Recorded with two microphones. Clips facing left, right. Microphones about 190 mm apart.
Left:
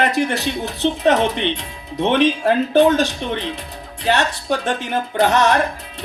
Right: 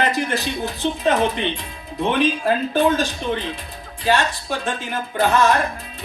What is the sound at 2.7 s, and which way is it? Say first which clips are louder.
Speech: left 7 dB; 70° left (ahead or behind).